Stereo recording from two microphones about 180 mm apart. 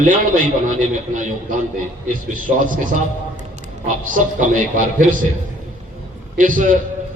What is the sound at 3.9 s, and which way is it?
A man's voice, 45° right (ahead or behind).